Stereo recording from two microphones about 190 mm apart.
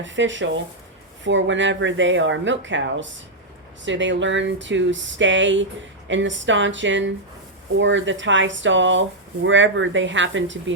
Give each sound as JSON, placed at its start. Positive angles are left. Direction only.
{"t": 0.0, "sound": "speech", "side_deg": -75}